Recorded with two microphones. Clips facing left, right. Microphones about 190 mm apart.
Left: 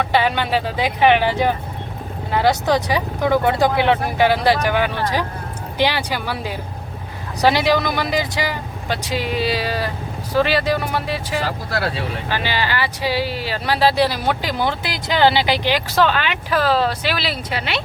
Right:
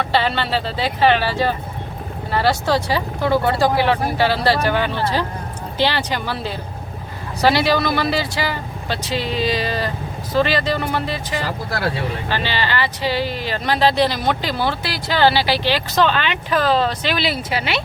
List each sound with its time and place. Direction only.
0.0 s speech: 15° left (ahead or behind)